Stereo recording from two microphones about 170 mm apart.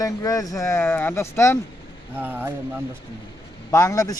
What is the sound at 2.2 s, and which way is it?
Speech, 10° right (ahead or behind).